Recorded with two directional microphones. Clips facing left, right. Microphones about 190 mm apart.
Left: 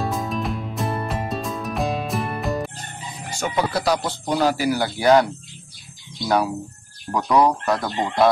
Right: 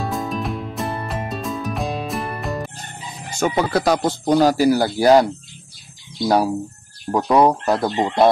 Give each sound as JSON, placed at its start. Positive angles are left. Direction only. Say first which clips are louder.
{"t": 0.0, "sound": "music", "louder": "right 1 dB", "side_deg": 0}
{"t": 3.3, "sound": "speech", "louder": "right 4 dB", "side_deg": -50}